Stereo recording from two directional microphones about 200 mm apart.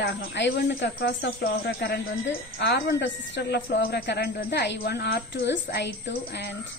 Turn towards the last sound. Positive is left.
turn(degrees=60)  # may be behind; listen again after turning